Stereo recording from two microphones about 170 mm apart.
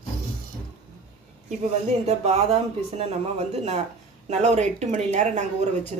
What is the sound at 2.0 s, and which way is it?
Speech, 35° right (ahead or behind).